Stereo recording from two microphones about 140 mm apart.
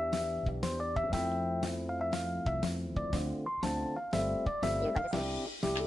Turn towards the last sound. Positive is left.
turn(degrees=0)  # may be behind; listen again after turning